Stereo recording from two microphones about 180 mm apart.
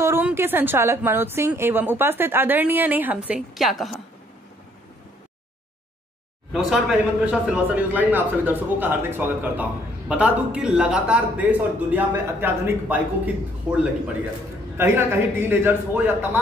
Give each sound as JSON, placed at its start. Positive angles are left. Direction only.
{"t": 0.0, "sound": "speech", "side_deg": -15}
{"t": 6.5, "sound": "speech", "side_deg": 0}